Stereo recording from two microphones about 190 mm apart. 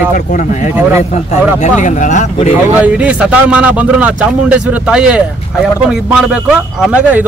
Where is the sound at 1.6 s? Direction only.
40° left (ahead or behind).